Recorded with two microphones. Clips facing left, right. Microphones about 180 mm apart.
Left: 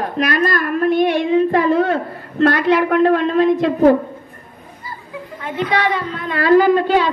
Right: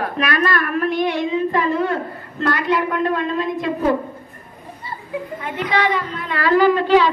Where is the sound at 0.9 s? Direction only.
60° left (ahead or behind).